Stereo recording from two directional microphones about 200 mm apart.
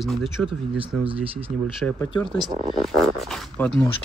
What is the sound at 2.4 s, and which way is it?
Speech, 20° right (ahead or behind).